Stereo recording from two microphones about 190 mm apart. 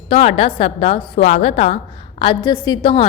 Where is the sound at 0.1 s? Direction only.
30° left (ahead or behind).